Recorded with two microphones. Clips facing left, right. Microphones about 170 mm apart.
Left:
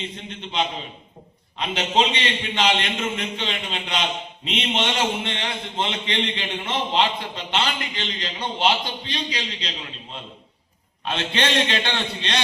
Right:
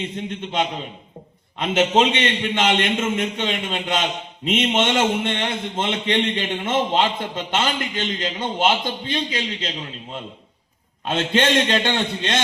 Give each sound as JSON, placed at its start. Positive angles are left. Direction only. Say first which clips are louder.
{"t": 0.0, "sound": "a man's voice", "louder": "right 6 dB", "side_deg": -45}
{"t": 11.0, "sound": "a man's voice", "louder": "right 5 dB", "side_deg": -45}